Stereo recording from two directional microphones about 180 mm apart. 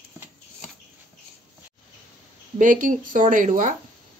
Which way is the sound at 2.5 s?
45° right (ahead or behind).